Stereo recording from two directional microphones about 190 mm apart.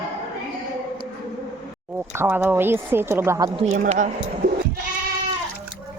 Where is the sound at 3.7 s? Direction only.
40° right (ahead or behind).